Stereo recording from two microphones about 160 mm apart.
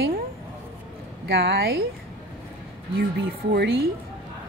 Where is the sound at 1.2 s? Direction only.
90° right.